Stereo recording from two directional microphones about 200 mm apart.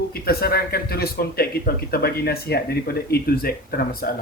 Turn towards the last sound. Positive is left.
turn(degrees=45)  # may be behind; listen again after turning